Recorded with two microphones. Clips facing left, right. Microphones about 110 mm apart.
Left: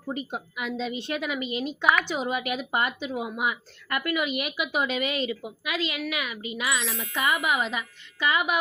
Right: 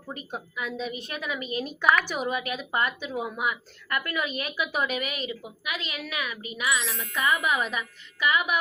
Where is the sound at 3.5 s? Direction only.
25° left (ahead or behind).